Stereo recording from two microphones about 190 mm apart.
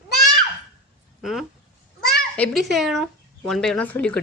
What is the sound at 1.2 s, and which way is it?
Speech, centre (ahead or behind).